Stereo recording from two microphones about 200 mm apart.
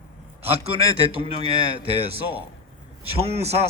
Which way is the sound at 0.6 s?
30° right (ahead or behind).